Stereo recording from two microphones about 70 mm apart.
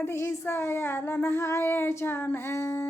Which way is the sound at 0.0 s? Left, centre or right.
Left.